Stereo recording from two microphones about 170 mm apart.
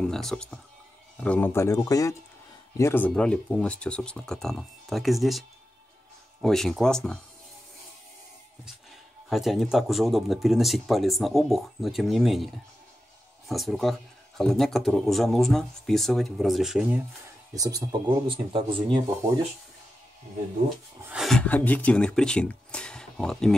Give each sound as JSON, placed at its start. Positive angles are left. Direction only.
{"t": 0.0, "sound": "speech", "side_deg": 5}
{"t": 6.4, "sound": "speech", "side_deg": 0}
{"t": 9.3, "sound": "speech", "side_deg": 0}
{"t": 13.5, "sound": "speech", "side_deg": 0}
{"t": 17.6, "sound": "speech", "side_deg": -20}
{"t": 21.0, "sound": "speech", "side_deg": -5}